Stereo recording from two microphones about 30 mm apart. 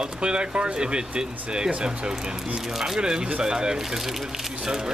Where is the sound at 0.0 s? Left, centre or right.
Right.